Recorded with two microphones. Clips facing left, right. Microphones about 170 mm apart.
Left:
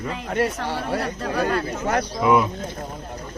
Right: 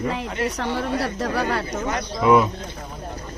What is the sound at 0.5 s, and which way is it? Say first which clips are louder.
Speech: right 1 dB; 65° right (ahead or behind).